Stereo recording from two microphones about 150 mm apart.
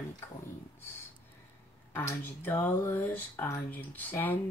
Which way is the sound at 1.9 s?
15° left (ahead or behind).